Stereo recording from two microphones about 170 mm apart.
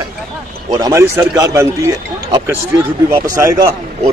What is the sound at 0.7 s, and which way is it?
A man's voice, 20° right (ahead or behind).